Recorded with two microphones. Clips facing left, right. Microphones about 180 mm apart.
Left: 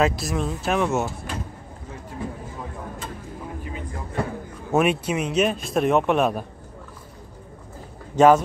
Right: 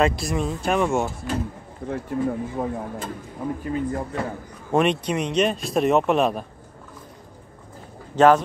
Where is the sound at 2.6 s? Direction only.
50° right (ahead or behind).